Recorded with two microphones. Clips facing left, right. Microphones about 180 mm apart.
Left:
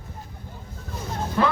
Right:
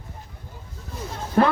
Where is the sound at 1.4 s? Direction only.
50° right (ahead or behind).